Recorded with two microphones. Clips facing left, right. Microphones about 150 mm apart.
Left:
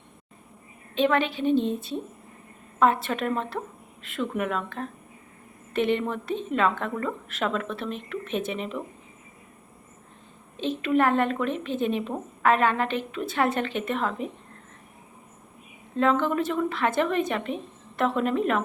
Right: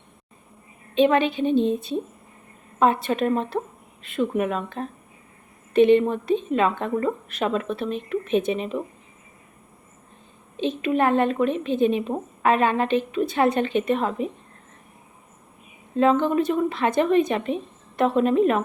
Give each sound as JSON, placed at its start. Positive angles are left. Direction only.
{"t": 0.9, "sound": "a woman's voice", "side_deg": -20}
{"t": 10.6, "sound": "a woman's voice", "side_deg": -20}
{"t": 16.0, "sound": "a woman's voice", "side_deg": -20}